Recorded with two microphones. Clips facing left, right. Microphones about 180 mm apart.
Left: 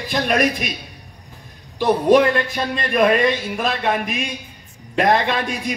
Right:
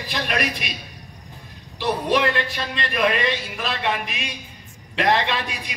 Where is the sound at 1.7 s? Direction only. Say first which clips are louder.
Left 8 dB; 45° left (ahead or behind).